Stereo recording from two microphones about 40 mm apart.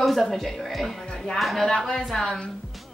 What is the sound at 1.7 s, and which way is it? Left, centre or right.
Speech, centre.